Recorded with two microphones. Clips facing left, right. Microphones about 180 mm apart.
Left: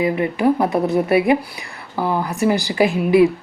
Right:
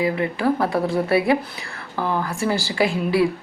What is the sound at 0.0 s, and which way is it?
Speech, 20° left (ahead or behind).